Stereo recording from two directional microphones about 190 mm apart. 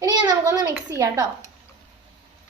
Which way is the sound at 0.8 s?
15° right (ahead or behind).